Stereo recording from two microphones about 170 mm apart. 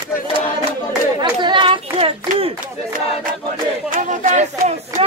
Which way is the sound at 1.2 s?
25° right (ahead or behind).